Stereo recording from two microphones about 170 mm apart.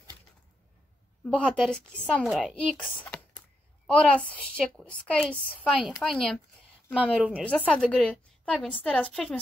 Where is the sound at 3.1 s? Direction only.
5° left (ahead or behind).